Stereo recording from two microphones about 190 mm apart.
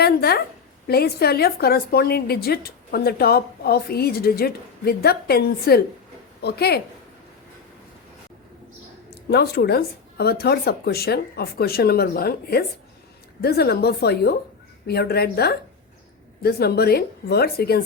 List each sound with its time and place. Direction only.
0.0 s a woman's voice: 55° left (ahead or behind)
9.0 s a woman's voice: 55° left (ahead or behind)